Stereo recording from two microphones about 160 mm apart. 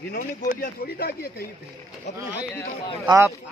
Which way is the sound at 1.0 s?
75° left (ahead or behind).